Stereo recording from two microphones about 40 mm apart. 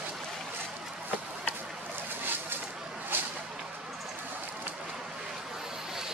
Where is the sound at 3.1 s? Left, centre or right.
Right.